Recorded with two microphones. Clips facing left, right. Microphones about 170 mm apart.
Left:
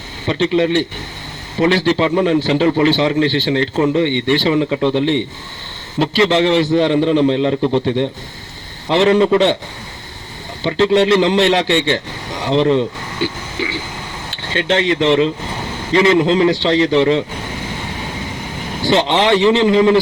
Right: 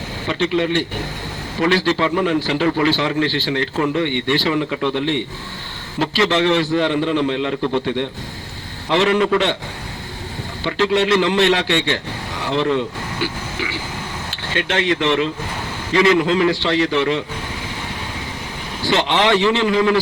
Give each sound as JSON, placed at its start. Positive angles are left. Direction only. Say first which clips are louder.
{"t": 0.3, "sound": "a man's voice", "louder": "left 4 dB", "side_deg": 20}
{"t": 8.9, "sound": "a man's voice", "louder": "left 4 dB", "side_deg": 20}
{"t": 10.6, "sound": "a man's voice", "louder": "left 5 dB", "side_deg": 25}
{"t": 18.9, "sound": "a man's voice", "louder": "left 3 dB", "side_deg": 25}